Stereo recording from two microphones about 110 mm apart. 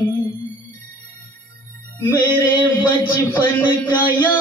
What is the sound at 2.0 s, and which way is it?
Music, 15° left (ahead or behind).